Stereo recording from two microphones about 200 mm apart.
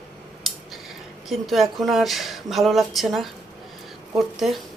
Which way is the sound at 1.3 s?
Centre (ahead or behind).